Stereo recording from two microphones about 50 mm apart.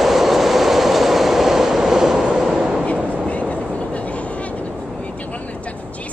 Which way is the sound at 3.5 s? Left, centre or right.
Left.